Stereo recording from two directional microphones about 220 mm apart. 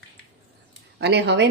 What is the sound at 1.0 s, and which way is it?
Speech, 50° right (ahead or behind).